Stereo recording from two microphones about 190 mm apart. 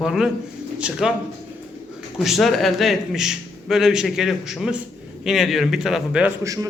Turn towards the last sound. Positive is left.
turn(degrees=-15)  # may be behind; listen again after turning